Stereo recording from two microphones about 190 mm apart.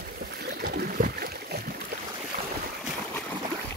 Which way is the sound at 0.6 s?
55° right (ahead or behind).